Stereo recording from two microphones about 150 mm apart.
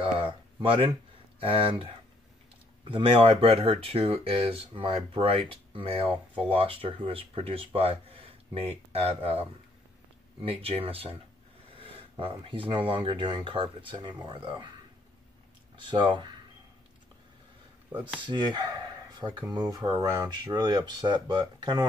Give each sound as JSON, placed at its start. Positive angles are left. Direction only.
{"t": 0.0, "sound": "a sound", "side_deg": -35}
{"t": 1.4, "sound": "speech", "side_deg": -40}
{"t": 10.4, "sound": "speech", "side_deg": -40}
{"t": 15.9, "sound": "speech", "side_deg": -30}
{"t": 17.9, "sound": "speech", "side_deg": -10}
{"t": 18.2, "sound": "speech", "side_deg": -30}